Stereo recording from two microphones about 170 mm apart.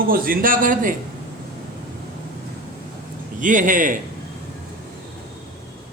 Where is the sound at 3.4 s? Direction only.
50° right (ahead or behind).